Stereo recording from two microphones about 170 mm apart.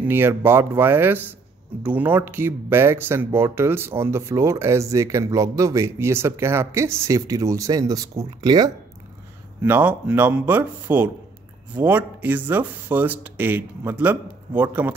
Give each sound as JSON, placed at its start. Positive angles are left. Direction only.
{"t": 0.0, "sound": "speech", "side_deg": -15}
{"t": 9.6, "sound": "speech", "side_deg": -10}